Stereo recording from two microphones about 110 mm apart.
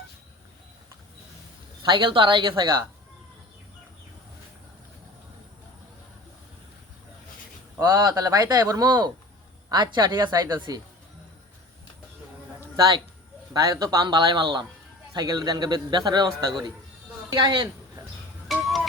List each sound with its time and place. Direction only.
1.8 s speech: 45° right (ahead or behind)
7.8 s a man's voice: 35° right (ahead or behind)
12.7 s a man's voice: 35° right (ahead or behind)
18.5 s a sound: centre (ahead or behind)